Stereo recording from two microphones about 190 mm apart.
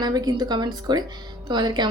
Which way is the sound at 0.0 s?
20° right (ahead or behind).